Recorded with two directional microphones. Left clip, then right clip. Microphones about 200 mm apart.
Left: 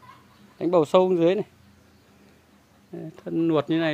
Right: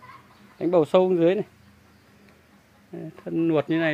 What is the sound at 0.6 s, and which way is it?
Speech, 5° left (ahead or behind).